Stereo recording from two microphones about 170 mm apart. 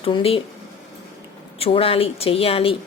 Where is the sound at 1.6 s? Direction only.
35° left (ahead or behind).